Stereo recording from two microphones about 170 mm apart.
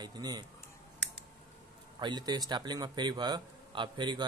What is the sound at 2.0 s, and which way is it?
A man's voice, 25° right (ahead or behind).